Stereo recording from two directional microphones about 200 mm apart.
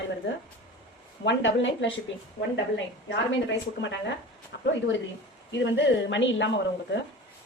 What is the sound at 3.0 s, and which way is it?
A woman's voice, 60° left (ahead or behind).